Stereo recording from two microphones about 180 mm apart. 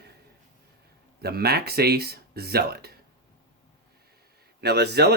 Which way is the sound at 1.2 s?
60° right (ahead or behind).